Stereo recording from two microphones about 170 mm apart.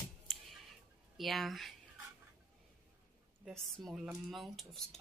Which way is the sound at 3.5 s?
Centre (ahead or behind).